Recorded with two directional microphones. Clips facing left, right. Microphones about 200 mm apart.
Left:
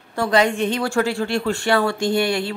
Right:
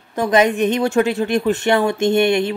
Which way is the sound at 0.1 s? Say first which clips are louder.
Right 3 dB; 20° right (ahead or behind).